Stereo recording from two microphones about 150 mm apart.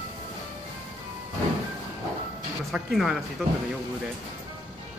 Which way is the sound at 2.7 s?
Centre (ahead or behind).